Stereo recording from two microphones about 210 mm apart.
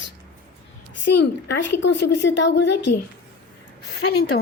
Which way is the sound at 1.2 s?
55° left (ahead or behind).